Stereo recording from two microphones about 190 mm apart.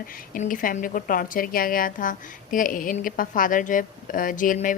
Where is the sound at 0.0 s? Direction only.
50° left (ahead or behind).